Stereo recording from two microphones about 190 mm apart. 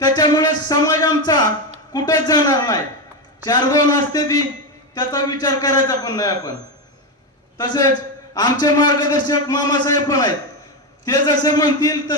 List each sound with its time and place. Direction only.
0.0 s music: 20° left (ahead or behind)
1.9 s a man's voice: 20° left (ahead or behind)
7.6 s a man's voice: 20° left (ahead or behind)